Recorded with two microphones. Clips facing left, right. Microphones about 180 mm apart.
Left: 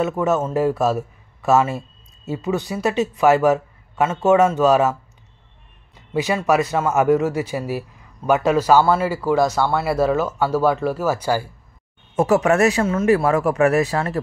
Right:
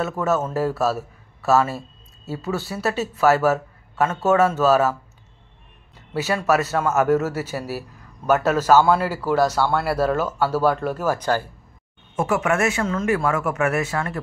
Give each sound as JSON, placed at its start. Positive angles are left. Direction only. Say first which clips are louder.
{"t": 0.0, "sound": "speech", "louder": "left 3 dB", "side_deg": 15}
{"t": 5.9, "sound": "a man's voice", "louder": "left 3 dB", "side_deg": 15}
{"t": 12.2, "sound": "speech", "louder": "left 5 dB", "side_deg": 35}